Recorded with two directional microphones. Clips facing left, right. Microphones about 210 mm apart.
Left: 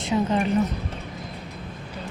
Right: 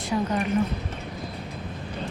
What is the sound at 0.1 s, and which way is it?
Speech, 25° left (ahead or behind).